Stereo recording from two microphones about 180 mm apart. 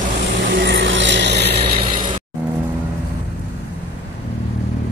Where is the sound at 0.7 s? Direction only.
90° right; by 1.9 s 65° right (ahead or behind).